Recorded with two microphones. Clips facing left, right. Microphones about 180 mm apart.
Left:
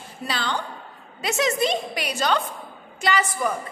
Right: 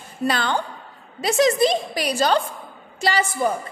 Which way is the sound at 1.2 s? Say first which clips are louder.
Right 5 dB; 35° right (ahead or behind).